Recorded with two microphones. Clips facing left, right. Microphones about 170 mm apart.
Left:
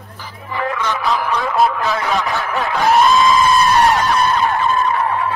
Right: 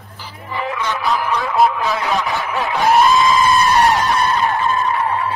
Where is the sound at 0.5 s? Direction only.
15° right (ahead or behind).